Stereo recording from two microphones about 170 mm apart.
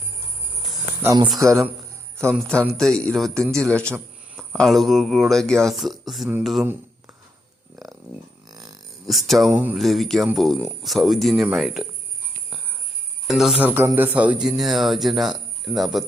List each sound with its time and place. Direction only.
1.0 s a man's voice: 20° right (ahead or behind)
2.4 s speech: 5° left (ahead or behind)
9.0 s speech: centre (ahead or behind)
13.2 s speech: centre (ahead or behind)